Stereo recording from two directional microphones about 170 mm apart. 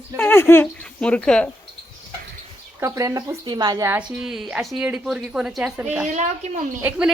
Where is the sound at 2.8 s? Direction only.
20° right (ahead or behind).